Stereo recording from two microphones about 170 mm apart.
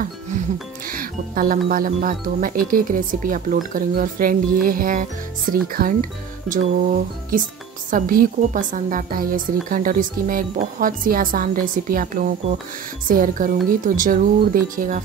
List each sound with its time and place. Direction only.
0.8 s speech: 55° right (ahead or behind)
7.3 s speech: 55° right (ahead or behind)